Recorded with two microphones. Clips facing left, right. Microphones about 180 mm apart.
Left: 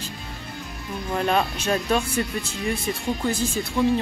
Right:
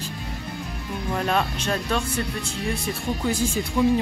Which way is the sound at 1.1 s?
5° left (ahead or behind).